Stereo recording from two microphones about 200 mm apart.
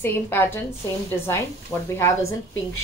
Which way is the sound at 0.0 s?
10° left (ahead or behind).